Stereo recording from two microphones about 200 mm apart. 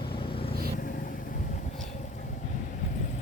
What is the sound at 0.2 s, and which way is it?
Vehicle, 25° left (ahead or behind).